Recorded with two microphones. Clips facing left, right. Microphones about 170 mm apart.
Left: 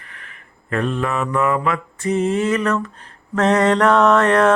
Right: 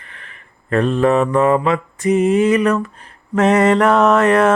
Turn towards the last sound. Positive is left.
turn(degrees=-5)  # may be behind; listen again after turning